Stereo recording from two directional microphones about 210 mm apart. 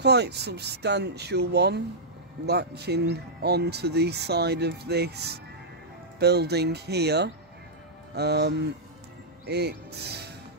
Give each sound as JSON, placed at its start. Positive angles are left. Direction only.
{"t": 0.0, "sound": "speech", "side_deg": -50}